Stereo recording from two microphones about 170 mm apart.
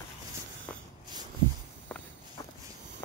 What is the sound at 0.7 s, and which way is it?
Snort, 10° left (ahead or behind).